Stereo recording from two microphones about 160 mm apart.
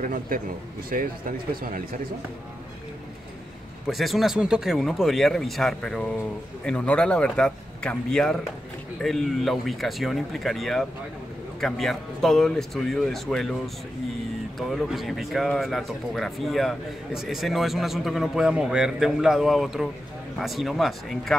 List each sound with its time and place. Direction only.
0.0 s a man's voice: 60° right (ahead or behind)
1.5 s speech: 65° right (ahead or behind)
3.8 s a man's voice: centre (ahead or behind)
14.6 s a man's voice: centre (ahead or behind)